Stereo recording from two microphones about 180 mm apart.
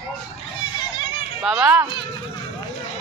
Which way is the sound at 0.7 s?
25° left (ahead or behind).